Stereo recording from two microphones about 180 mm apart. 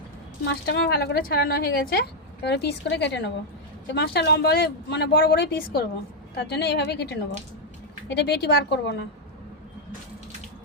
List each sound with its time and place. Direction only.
0.4 s a woman's voice: 60° left (ahead or behind)